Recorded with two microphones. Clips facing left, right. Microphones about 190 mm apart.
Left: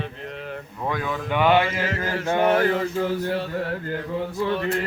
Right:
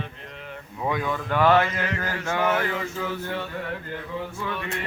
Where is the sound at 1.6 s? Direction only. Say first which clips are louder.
Left 1 dB; 30° left (ahead or behind).